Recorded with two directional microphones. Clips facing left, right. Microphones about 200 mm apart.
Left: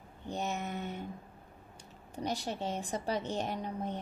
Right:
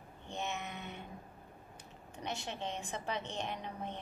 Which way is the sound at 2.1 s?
35° left (ahead or behind).